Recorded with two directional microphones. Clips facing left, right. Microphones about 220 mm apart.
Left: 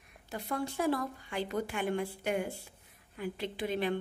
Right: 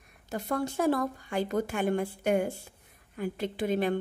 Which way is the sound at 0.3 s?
45° right (ahead or behind).